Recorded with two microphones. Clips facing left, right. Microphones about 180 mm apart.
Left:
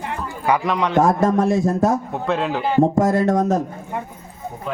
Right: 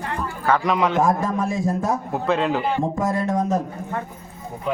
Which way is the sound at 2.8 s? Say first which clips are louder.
Left 7 dB; 75° left (ahead or behind).